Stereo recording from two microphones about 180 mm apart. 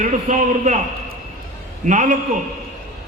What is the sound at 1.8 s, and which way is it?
Speech, 45° right (ahead or behind).